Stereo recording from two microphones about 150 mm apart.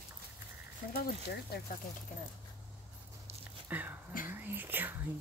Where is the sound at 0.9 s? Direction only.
90° left.